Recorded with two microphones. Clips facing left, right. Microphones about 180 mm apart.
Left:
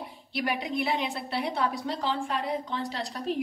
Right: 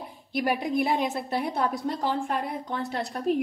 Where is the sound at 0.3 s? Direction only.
45° right (ahead or behind).